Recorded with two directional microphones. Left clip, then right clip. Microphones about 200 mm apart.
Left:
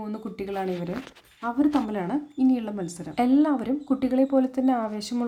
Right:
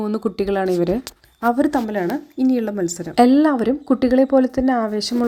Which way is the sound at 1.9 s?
20° right (ahead or behind).